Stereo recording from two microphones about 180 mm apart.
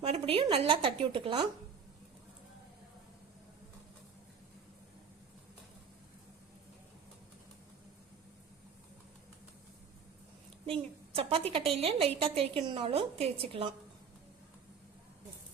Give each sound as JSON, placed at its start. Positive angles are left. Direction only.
{"t": 0.0, "sound": "a sound", "side_deg": -35}
{"t": 0.4, "sound": "a woman's voice", "side_deg": -30}
{"t": 10.7, "sound": "a woman's voice", "side_deg": -30}